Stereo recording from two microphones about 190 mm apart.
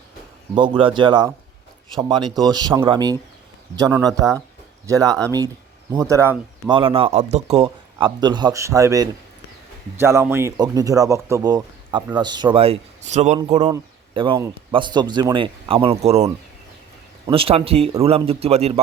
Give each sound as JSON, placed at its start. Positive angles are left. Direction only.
{"t": 0.5, "sound": "speech", "side_deg": -25}
{"t": 6.7, "sound": "a man's voice", "side_deg": -25}
{"t": 13.7, "sound": "speech", "side_deg": -25}
{"t": 17.2, "sound": "a man's voice", "side_deg": -30}